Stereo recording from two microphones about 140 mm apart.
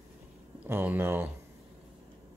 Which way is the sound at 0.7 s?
15° right (ahead or behind).